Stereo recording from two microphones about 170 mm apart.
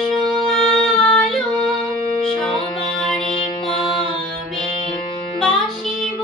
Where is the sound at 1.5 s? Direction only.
Centre (ahead or behind).